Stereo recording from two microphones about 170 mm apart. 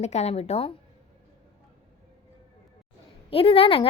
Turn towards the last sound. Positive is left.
turn(degrees=35)  # may be behind; listen again after turning